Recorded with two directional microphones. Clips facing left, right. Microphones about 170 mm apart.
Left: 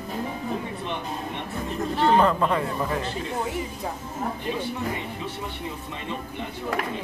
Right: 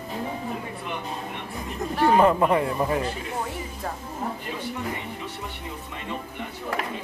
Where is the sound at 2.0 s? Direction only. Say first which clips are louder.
Right 2 dB; 10° right (ahead or behind).